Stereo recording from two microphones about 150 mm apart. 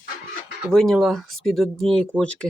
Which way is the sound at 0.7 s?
5° left (ahead or behind).